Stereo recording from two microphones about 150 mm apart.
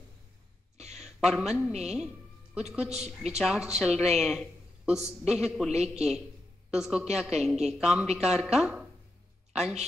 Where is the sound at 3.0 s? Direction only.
45° right (ahead or behind).